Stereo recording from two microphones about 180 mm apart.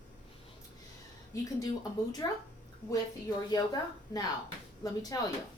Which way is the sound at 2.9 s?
20° left (ahead or behind).